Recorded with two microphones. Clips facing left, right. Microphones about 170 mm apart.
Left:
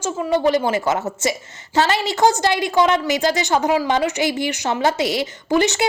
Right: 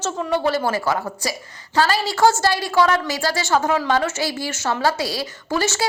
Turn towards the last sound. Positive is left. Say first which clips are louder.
# left 4 dB
turn(degrees=20)  # may be behind; listen again after turning